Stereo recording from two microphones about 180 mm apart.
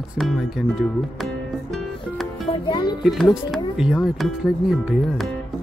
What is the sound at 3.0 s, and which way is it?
Speech, centre (ahead or behind).